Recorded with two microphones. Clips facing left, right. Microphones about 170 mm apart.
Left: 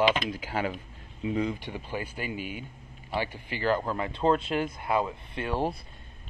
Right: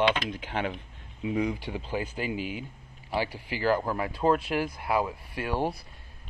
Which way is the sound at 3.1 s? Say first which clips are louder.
Right 1 dB; 10° right (ahead or behind).